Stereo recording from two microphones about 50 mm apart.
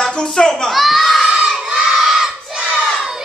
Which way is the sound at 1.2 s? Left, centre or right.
Centre.